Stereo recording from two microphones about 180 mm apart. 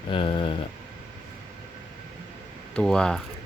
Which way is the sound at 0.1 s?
30° left (ahead or behind).